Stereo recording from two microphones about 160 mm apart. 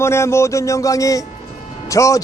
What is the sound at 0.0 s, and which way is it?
A man's voice, 15° left (ahead or behind).